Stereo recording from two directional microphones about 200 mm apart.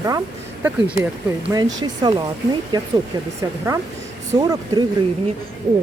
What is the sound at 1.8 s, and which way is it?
Speech, 20° right (ahead or behind).